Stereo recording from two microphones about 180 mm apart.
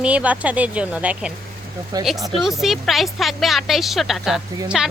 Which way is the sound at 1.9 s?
20° right (ahead or behind).